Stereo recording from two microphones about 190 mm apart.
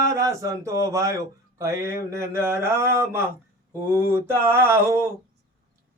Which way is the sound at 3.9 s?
10° right (ahead or behind).